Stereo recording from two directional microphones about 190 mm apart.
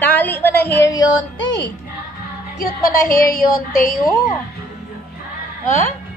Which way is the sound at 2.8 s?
50° left (ahead or behind).